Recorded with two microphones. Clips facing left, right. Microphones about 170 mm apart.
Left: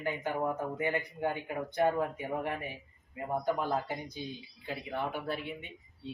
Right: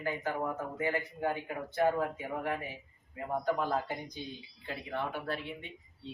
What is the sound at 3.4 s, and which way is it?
Speech, 10° left (ahead or behind).